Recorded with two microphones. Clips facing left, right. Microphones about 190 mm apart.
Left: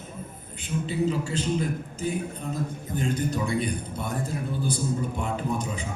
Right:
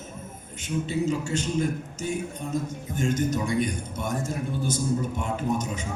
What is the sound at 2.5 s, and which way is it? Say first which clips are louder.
A man's voice: right 1 dB; 45° right (ahead or behind).